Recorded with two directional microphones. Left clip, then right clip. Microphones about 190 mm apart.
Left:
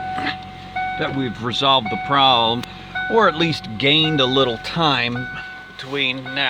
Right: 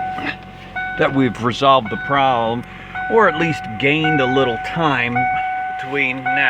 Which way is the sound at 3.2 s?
5° right (ahead or behind).